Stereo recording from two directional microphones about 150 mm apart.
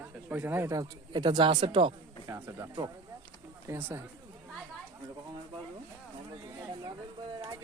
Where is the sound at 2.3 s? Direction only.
25° right (ahead or behind).